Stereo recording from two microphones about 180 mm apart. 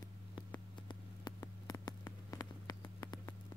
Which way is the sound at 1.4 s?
20° left (ahead or behind).